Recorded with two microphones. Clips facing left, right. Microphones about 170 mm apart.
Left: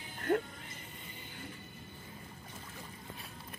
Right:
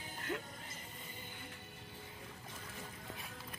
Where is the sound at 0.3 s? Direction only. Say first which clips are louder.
Left 11 dB; 55° left (ahead or behind).